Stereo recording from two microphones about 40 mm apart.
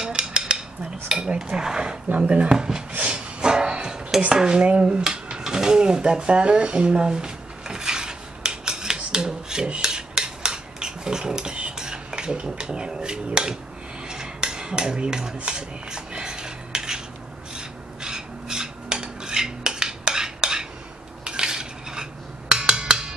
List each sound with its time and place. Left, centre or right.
0.0 s cutlery: centre
1.0 s speech: centre
2.0 s speech: right
2.5 s speech: centre
3.0 s a sound: right
4.3 s speech: right
5.4 s a sound: centre
9.7 s dishes: right
11.8 s speech: centre
14.0 s cutlery: centre
17.6 s filing: centre
21.2 s cutlery: right
22.5 s a sound: right